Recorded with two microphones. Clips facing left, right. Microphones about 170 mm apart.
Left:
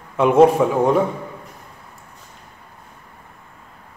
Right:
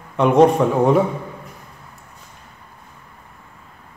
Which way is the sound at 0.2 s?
5° left (ahead or behind).